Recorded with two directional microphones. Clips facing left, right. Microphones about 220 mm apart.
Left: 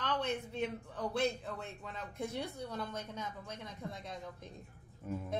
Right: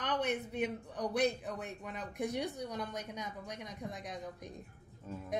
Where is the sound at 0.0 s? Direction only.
20° right (ahead or behind).